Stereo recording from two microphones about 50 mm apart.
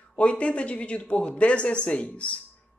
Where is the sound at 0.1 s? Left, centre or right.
Left.